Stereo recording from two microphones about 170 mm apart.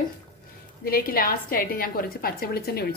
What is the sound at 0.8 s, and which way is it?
A woman's voice, 60° left (ahead or behind).